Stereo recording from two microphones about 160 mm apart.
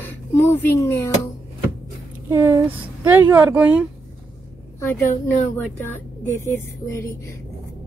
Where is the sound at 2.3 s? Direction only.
15° right (ahead or behind).